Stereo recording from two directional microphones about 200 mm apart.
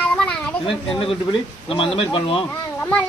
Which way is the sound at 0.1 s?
5° left (ahead or behind).